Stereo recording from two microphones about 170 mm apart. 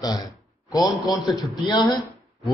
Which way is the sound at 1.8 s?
Centre (ahead or behind).